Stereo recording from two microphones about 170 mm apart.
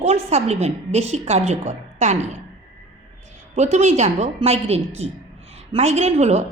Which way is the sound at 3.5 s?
40° right (ahead or behind).